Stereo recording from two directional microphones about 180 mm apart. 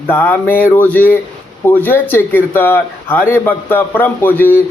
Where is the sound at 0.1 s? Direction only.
10° left (ahead or behind).